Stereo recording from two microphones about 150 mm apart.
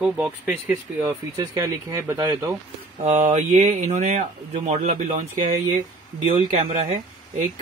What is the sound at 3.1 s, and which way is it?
Speech, 55° right (ahead or behind).